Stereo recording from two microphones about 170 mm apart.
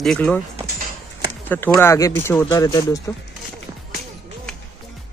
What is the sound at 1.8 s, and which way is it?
Speech, 15° left (ahead or behind).